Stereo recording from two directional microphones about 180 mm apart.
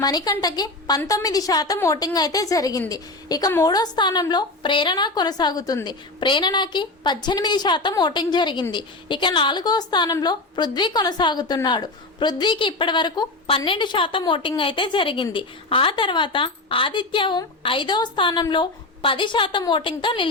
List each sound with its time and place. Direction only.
0.0 s a woman's voice: 20° left (ahead or behind)